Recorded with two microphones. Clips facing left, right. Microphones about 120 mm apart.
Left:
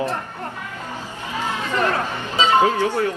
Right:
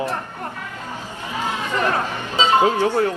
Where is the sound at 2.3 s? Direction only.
15° right (ahead or behind).